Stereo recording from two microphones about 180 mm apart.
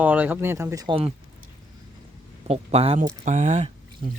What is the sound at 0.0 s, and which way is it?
Speech, 10° right (ahead or behind).